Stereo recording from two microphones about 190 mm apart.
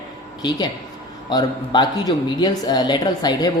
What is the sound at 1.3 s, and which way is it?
Speech, 20° left (ahead or behind).